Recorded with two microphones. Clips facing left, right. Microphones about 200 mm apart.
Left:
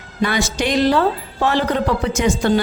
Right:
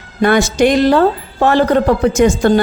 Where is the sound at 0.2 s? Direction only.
50° right (ahead or behind).